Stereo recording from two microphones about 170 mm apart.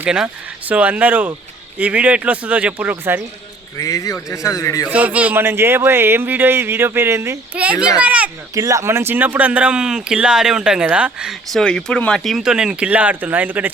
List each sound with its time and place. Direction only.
0.0 s speech: 5° right (ahead or behind)
3.8 s speech: 20° left (ahead or behind)
4.9 s speech: 10° right (ahead or behind)
8.5 s speech: 20° right (ahead or behind)